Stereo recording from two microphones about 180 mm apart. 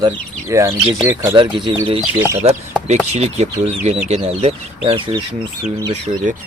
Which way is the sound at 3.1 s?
40° right (ahead or behind).